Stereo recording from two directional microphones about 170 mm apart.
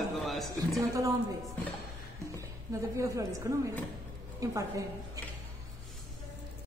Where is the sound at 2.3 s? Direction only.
20° right (ahead or behind).